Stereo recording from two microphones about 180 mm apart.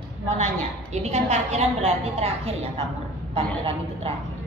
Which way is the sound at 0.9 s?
40° right (ahead or behind).